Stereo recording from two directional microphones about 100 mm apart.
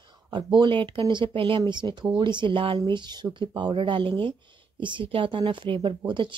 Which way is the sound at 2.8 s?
50° right (ahead or behind).